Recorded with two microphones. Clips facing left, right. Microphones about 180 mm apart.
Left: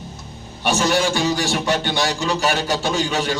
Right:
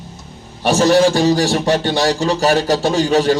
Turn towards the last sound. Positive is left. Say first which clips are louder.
# right 7 dB
turn(degrees=-35)  # may be behind; listen again after turning